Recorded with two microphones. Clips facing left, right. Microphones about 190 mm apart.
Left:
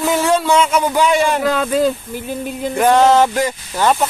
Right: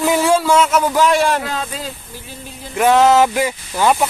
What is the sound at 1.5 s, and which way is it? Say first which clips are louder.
Speech: left 10 dB; 55° left (ahead or behind).